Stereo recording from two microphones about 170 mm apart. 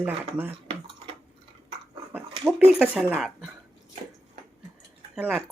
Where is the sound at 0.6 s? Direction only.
30° right (ahead or behind).